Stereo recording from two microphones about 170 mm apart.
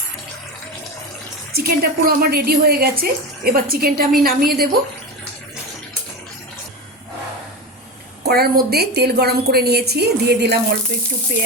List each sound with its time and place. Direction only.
1.5 s a woman's voice: 65° right (ahead or behind)
8.2 s a woman's voice: 70° right (ahead or behind)